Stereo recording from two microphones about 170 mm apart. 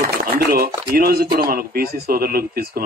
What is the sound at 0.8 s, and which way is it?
Speech, 60° right (ahead or behind).